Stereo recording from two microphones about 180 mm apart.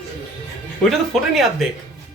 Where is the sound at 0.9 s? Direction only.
Centre (ahead or behind).